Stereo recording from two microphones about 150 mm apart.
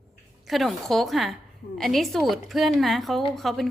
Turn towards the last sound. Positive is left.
turn(degrees=0)  # may be behind; listen again after turning